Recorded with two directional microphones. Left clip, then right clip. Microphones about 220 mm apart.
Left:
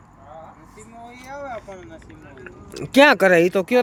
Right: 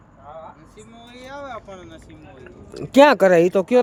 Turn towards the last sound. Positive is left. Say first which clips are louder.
# right 1 dB
turn(degrees=-15)  # may be behind; listen again after turning